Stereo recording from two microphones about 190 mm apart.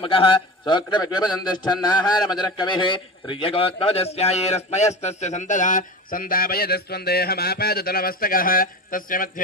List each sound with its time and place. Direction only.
0.0 s a man's voice: 25° left (ahead or behind); by 9.4 s 45° left (ahead or behind)